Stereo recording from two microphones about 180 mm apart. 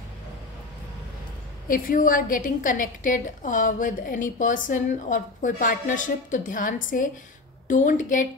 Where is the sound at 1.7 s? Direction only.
50° left (ahead or behind).